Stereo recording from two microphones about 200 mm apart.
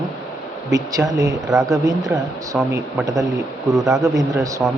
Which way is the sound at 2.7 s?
15° right (ahead or behind).